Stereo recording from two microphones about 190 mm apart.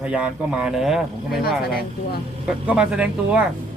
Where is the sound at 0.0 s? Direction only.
5° right (ahead or behind).